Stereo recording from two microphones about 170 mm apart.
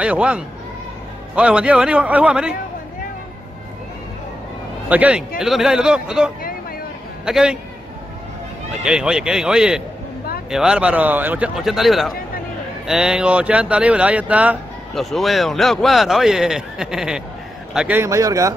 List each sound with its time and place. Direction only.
0.0 s a man's voice: 5° right (ahead or behind)
4.8 s a man's voice: 10° right (ahead or behind)
8.8 s a man's voice: 5° right (ahead or behind)